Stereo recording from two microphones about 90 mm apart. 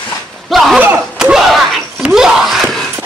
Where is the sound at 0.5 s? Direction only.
Centre (ahead or behind).